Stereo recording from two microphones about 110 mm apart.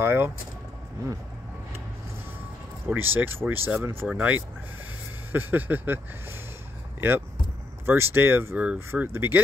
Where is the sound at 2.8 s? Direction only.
20° right (ahead or behind).